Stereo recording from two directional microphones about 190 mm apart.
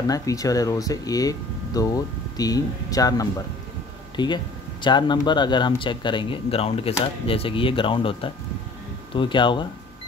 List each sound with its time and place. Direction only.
0.1 s speech: 15° left (ahead or behind)